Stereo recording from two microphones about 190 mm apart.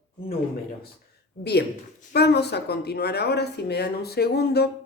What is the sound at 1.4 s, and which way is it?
A woman's voice, 55° left (ahead or behind).